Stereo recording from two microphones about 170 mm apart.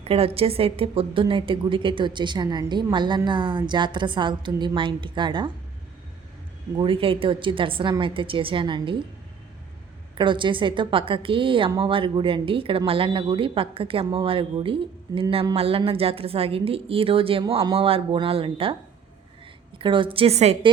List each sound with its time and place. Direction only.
0.0 s a woman's voice: 35° right (ahead or behind)
6.7 s a woman's voice: 30° right (ahead or behind)
10.2 s a woman's voice: 30° right (ahead or behind)
19.8 s a woman's voice: 30° right (ahead or behind)